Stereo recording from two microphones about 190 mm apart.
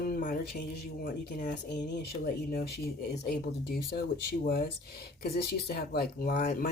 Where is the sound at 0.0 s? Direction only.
45° left (ahead or behind).